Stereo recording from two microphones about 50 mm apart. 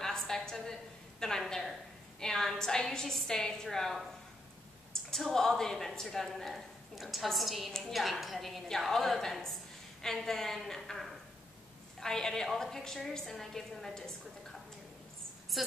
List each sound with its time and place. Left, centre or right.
0.0 s a sound: centre
1.4 s a woman's voice: centre
5.1 s a woman's voice: centre
15.5 s speech: centre